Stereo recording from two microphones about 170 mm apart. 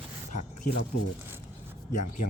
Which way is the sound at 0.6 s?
60° left (ahead or behind).